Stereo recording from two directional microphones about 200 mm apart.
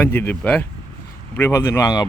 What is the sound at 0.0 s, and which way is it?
Speech, 10° left (ahead or behind).